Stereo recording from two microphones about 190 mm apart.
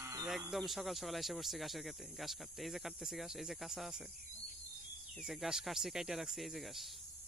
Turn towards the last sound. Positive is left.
turn(degrees=0)  # may be behind; listen again after turning